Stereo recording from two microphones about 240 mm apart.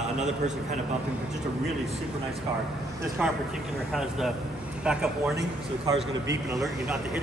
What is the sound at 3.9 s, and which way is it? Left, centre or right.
A man's voice, centre.